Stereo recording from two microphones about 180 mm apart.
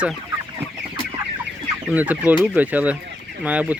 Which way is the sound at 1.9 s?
10° right (ahead or behind).